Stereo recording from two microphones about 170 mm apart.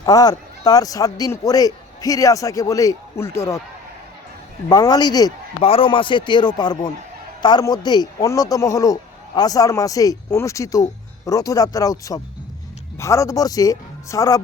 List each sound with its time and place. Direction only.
0.0 s speech: 25° left (ahead or behind)
4.7 s speech: 25° left (ahead or behind)
5.5 s speech: 35° left (ahead or behind)